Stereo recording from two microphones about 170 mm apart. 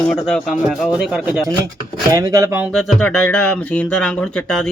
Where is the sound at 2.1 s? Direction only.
20° right (ahead or behind).